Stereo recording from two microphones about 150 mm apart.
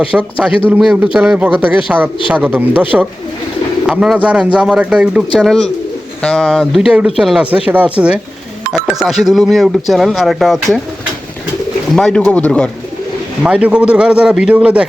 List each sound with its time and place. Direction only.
0.0 s speech: 5° right (ahead or behind)
11.9 s speech: 5° left (ahead or behind)
13.4 s speech: 5° right (ahead or behind)